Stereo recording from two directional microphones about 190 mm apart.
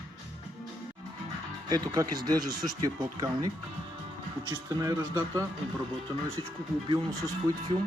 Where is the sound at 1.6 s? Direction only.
20° right (ahead or behind).